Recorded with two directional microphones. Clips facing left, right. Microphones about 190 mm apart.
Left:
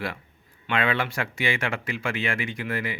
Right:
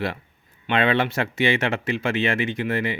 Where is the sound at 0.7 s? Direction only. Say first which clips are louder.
Right 5 dB; 25° right (ahead or behind).